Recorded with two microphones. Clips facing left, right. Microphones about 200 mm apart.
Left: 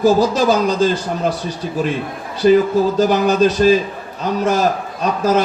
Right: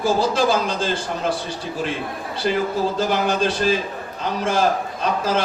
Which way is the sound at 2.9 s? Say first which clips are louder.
Left 7 dB; 40° left (ahead or behind).